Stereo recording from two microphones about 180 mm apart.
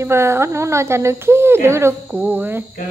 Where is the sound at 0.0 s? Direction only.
15° right (ahead or behind).